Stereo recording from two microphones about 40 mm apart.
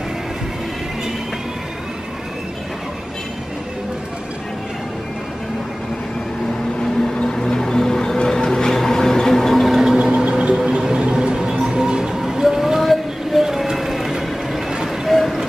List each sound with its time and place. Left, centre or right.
7.2 s music: centre
9.9 s a sound: centre
10.5 s music: centre
12.2 s music: centre
15.0 s vehicle: centre